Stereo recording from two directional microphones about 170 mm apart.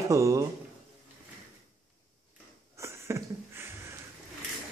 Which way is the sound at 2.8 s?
15° right (ahead or behind).